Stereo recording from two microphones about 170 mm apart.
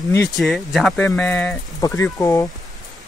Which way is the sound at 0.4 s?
Centre (ahead or behind).